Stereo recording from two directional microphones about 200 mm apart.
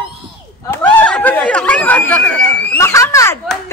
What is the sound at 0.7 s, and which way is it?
Speech, 10° left (ahead or behind).